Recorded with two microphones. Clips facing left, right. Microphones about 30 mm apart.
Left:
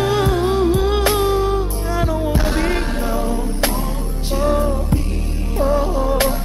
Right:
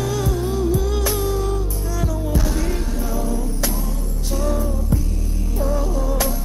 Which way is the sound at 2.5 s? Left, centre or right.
Left.